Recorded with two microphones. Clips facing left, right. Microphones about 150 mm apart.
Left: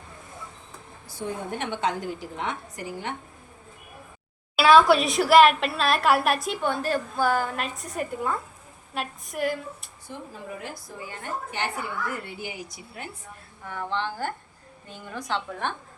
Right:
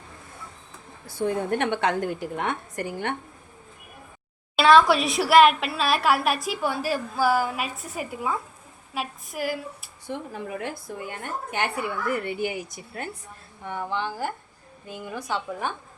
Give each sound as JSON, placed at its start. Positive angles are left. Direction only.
{"t": 1.0, "sound": "a woman's voice", "side_deg": -65}
{"t": 4.5, "sound": "a woman's voice", "side_deg": 5}
{"t": 10.1, "sound": "a woman's voice", "side_deg": -65}
{"t": 13.7, "sound": "a woman's voice", "side_deg": -15}